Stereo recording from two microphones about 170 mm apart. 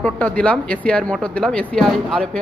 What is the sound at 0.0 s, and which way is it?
Speech, 5° left (ahead or behind).